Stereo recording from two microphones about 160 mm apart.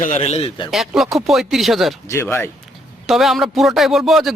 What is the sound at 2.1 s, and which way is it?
Speech, 15° left (ahead or behind).